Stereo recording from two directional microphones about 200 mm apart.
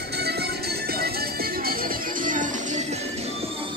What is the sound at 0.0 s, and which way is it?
Music, 55° right (ahead or behind).